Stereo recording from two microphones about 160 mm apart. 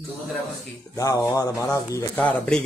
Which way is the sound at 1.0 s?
20° left (ahead or behind).